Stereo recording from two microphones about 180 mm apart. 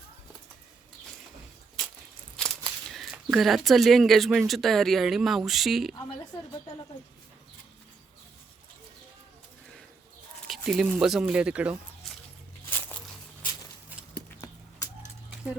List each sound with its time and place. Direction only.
2.3 s a sound: centre (ahead or behind)
4.4 s speech: centre (ahead or behind)
10.5 s speech: centre (ahead or behind)